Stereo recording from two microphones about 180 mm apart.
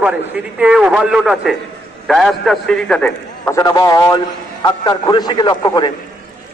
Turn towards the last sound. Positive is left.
turn(degrees=25)  # may be behind; listen again after turning